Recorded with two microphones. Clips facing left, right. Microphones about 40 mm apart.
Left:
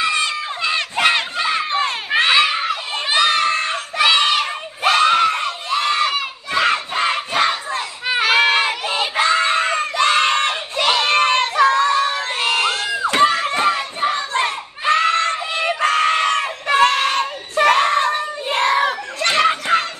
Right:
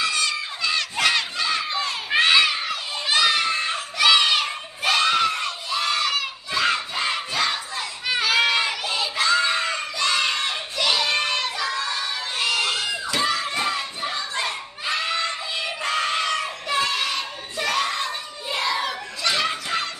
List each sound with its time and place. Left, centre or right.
0.0 s crowd: left
1.7 s crowd: left
2.0 s crowd: left
4.0 s a sound: left
4.8 s screaming: left
6.5 s crowd: left
11.0 s a sound: left
12.5 s screaming: left
13.0 s crowd: left